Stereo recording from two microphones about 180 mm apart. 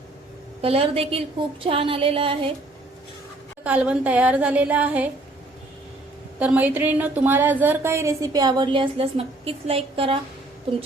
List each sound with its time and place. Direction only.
0.6 s a sound: 30° right (ahead or behind)
3.6 s a woman's voice: 5° right (ahead or behind)
6.4 s a woman's voice: 10° right (ahead or behind); by 10.2 s 30° right (ahead or behind)